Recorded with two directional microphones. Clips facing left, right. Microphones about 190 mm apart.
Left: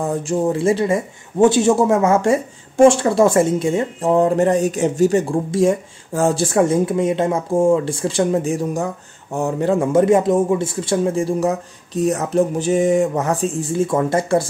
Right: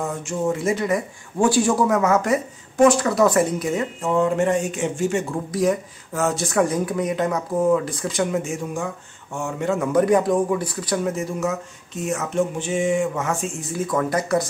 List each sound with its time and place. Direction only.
0.0 s speech: 35° left (ahead or behind)